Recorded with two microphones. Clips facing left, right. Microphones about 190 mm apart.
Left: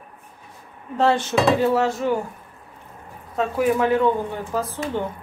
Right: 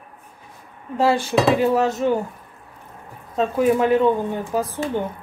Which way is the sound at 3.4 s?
20° right (ahead or behind).